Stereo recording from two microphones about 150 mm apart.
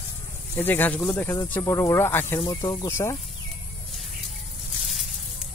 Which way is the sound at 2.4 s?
25° left (ahead or behind).